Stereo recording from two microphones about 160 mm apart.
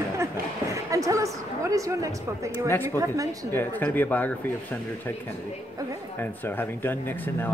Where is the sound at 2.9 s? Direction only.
20° right (ahead or behind).